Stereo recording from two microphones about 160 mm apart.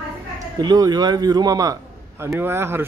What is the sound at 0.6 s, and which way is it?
A man's voice, 25° right (ahead or behind).